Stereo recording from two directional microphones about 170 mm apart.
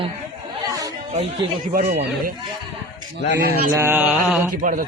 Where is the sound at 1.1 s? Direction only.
40° right (ahead or behind).